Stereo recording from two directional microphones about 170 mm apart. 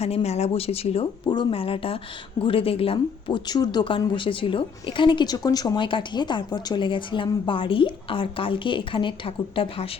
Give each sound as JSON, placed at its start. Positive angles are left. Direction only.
{"t": 0.0, "sound": "speech", "side_deg": 40}